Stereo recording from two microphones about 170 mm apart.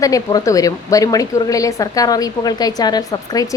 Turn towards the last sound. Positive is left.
turn(degrees=20)  # may be behind; listen again after turning